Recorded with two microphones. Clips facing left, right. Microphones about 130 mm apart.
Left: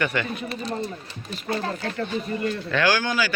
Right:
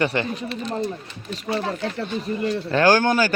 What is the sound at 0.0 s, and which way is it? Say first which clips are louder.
Speech: right 3 dB; 30° right (ahead or behind).